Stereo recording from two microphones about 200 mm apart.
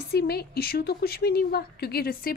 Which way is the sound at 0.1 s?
55° left (ahead or behind).